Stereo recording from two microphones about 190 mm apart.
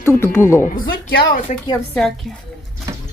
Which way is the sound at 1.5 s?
40° left (ahead or behind).